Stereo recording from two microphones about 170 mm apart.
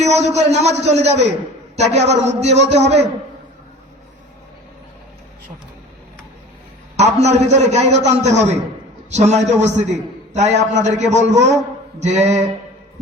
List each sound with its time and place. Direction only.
0.0 s a man's voice: 40° right (ahead or behind)
6.9 s a man's voice: 40° right (ahead or behind)